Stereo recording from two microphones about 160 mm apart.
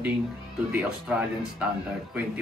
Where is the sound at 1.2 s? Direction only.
5° right (ahead or behind).